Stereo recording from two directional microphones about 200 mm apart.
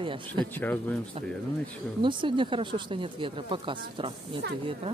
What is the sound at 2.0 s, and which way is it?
Speech, 25° right (ahead or behind).